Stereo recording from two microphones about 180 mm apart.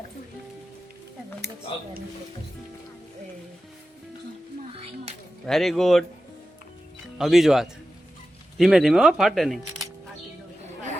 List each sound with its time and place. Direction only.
4.7 s music: 35° right (ahead or behind)
5.5 s speech: centre (ahead or behind)
7.2 s speech: centre (ahead or behind)